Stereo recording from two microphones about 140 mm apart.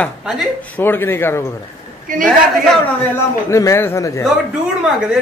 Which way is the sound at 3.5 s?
20° left (ahead or behind).